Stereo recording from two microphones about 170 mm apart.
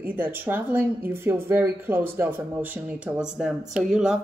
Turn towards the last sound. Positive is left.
turn(degrees=-5)  # may be behind; listen again after turning